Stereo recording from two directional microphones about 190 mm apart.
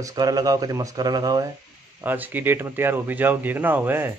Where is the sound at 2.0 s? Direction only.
10° right (ahead or behind).